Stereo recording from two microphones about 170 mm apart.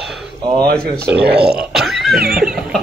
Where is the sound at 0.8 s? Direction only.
65° right (ahead or behind).